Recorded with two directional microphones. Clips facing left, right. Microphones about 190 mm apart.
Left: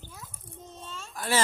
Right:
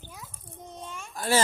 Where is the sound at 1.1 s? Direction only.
30° right (ahead or behind).